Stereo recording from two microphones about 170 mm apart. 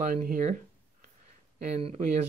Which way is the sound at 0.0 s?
50° right (ahead or behind).